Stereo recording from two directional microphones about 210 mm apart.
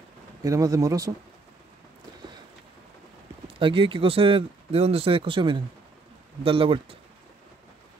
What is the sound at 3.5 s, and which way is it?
Speech, 25° right (ahead or behind).